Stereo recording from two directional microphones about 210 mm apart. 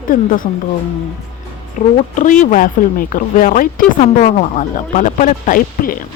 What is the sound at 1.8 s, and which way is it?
Speech, 40° left (ahead or behind).